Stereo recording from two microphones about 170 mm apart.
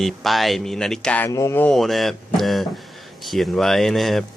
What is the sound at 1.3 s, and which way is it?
Speech, 15° left (ahead or behind).